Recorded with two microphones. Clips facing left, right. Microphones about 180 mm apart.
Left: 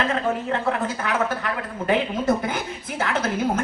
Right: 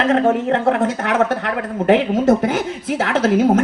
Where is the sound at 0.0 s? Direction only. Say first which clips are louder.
Right 8 dB; 75° right (ahead or behind).